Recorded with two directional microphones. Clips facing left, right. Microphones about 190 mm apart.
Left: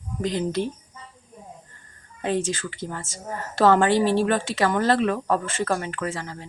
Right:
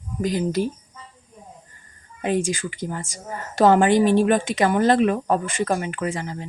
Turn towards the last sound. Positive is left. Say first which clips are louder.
# right 3 dB
turn(degrees=-15)  # may be behind; listen again after turning